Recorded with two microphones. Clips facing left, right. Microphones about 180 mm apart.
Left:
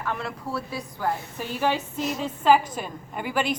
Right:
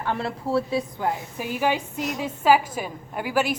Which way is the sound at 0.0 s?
30° right (ahead or behind).